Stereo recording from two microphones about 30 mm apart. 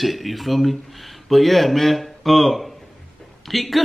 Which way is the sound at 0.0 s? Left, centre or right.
Centre.